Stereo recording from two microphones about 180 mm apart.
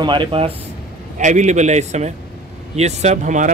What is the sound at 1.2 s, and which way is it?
Speech, 40° right (ahead or behind).